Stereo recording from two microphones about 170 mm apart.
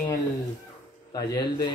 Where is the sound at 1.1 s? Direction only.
20° left (ahead or behind).